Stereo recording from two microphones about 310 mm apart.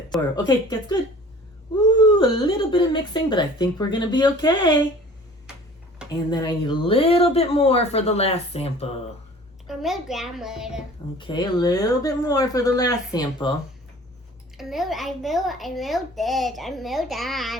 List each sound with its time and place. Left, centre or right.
0.3 s speech: centre
2.0 s speech: centre
6.3 s speech: centre
9.6 s a child's voice: centre
10.8 s speech: centre
14.6 s a child's voice: centre